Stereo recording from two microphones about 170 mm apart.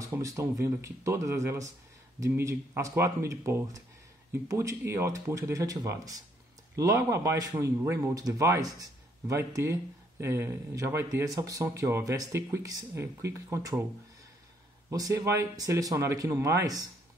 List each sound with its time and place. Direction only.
0.0 s speech: 20° right (ahead or behind)
14.9 s speech: 20° right (ahead or behind)